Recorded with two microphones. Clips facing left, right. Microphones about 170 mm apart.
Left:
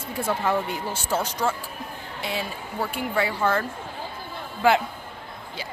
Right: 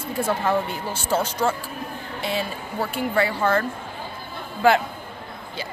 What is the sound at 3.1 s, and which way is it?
Speech, 5° left (ahead or behind).